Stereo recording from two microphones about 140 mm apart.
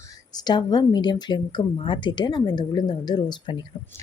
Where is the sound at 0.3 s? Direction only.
30° left (ahead or behind).